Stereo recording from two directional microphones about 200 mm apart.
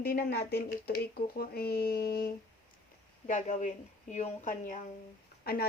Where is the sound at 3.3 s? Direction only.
40° left (ahead or behind).